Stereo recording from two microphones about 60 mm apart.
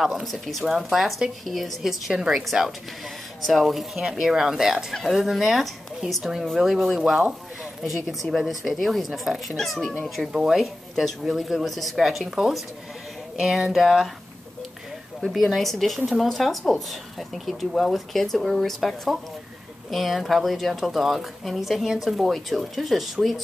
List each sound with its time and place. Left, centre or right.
0.0 s a woman's voice: centre
10.3 s a woman's voice: centre
15.1 s a woman's voice: centre